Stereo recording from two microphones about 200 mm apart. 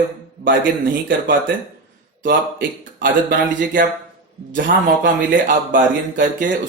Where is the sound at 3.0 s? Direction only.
40° right (ahead or behind).